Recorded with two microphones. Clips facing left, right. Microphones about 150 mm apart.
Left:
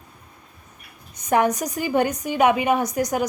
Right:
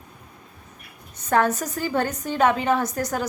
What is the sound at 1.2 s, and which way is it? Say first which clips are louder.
A woman's voice: left 1 dB; 15° left (ahead or behind).